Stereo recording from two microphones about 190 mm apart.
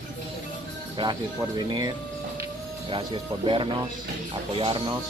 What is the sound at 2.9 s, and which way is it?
Speech, 25° right (ahead or behind).